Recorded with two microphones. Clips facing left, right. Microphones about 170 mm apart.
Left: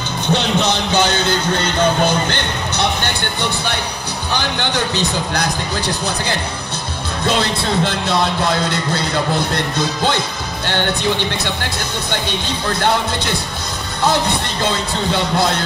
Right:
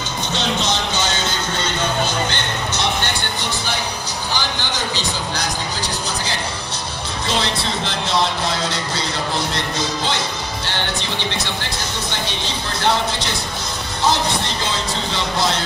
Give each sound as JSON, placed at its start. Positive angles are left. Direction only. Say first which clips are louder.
{"t": 0.3, "sound": "music", "louder": "left 5 dB", "side_deg": 60}
{"t": 4.3, "sound": "music", "louder": "left 5 dB", "side_deg": 60}
{"t": 7.2, "sound": "music", "louder": "left 4 dB", "side_deg": 55}
{"t": 12.8, "sound": "music", "louder": "even", "side_deg": 55}
{"t": 15.3, "sound": "music", "louder": "left 2 dB", "side_deg": 55}